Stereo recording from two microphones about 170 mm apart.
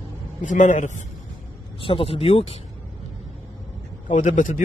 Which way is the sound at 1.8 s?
35° left (ahead or behind).